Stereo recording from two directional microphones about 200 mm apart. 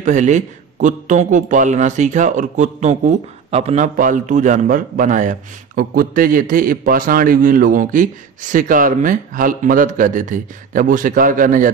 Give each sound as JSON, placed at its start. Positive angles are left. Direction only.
{"t": 0.0, "sound": "a man's voice", "side_deg": -35}